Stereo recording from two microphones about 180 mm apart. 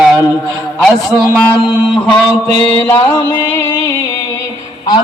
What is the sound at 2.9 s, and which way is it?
Music, 10° left (ahead or behind).